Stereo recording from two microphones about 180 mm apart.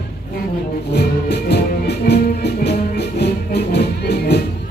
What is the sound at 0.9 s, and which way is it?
Music, 65° left (ahead or behind).